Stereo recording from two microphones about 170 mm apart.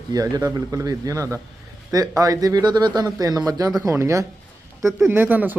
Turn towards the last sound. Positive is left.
turn(degrees=-10)  # may be behind; listen again after turning